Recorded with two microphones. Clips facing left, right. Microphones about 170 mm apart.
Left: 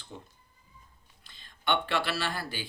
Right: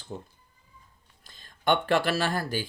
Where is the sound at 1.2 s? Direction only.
45° right (ahead or behind).